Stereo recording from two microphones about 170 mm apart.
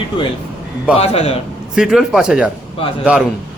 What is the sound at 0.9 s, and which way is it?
Speech, 35° left (ahead or behind).